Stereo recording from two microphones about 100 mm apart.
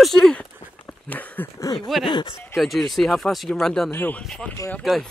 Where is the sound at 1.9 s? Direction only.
Centre (ahead or behind).